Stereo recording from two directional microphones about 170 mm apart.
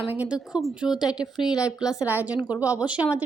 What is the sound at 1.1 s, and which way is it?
Speech, 25° left (ahead or behind).